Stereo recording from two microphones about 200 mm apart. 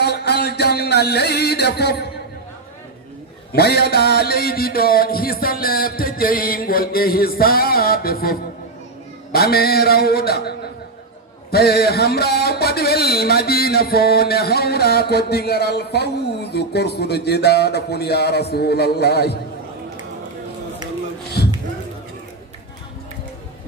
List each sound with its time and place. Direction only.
0.0 s music: 55° left (ahead or behind)
3.5 s a man's voice: 55° left (ahead or behind)
11.5 s a man's voice: 55° left (ahead or behind)
21.4 s a sound: 55° left (ahead or behind)